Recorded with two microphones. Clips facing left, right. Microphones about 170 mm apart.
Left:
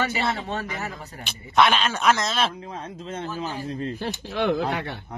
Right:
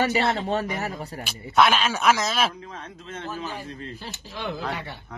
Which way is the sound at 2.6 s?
30° left (ahead or behind).